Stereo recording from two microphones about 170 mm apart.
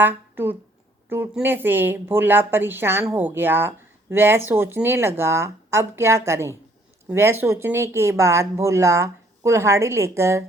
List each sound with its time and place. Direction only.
0.0 s speech: 10° right (ahead or behind)